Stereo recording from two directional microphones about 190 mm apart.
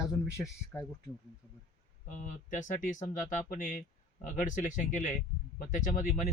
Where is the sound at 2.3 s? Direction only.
40° left (ahead or behind).